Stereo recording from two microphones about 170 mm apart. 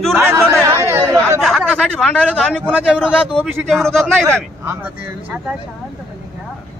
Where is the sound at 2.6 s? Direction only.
5° right (ahead or behind).